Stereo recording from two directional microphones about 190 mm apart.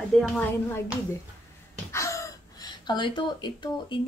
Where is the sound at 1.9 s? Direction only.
15° left (ahead or behind).